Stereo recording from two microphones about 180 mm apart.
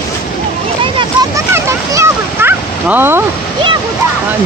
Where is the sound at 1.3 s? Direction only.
15° right (ahead or behind).